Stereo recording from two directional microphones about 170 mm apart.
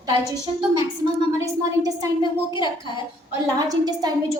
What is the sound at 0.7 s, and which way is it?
Speech, 25° right (ahead or behind).